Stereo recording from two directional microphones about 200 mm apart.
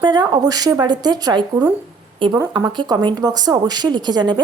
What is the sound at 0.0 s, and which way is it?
Speech, 20° right (ahead or behind).